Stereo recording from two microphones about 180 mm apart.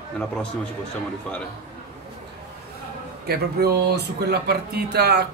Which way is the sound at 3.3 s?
60° right (ahead or behind).